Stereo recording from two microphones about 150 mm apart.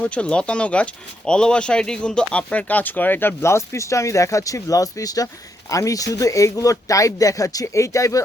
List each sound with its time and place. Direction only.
0.0 s speech: 5° left (ahead or behind)